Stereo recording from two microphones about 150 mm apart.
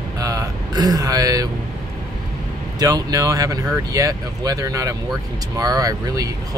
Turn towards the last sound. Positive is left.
turn(degrees=-25)  # may be behind; listen again after turning